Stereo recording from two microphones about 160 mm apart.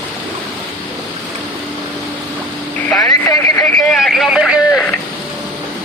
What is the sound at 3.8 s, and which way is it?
Speech, 5° left (ahead or behind).